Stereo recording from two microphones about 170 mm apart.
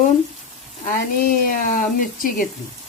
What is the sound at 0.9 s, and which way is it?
Speech, 60° left (ahead or behind).